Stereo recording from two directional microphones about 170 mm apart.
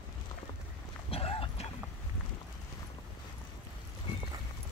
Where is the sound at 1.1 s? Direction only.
35° left (ahead or behind).